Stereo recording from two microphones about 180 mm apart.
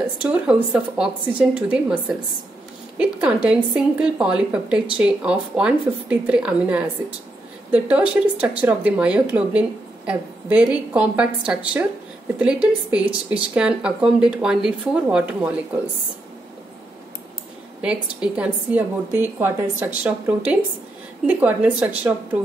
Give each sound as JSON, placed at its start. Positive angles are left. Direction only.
{"t": 0.0, "sound": "speech", "side_deg": -5}
{"t": 17.8, "sound": "speech", "side_deg": -5}